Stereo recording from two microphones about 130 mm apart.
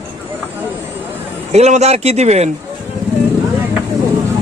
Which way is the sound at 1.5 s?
55° right (ahead or behind).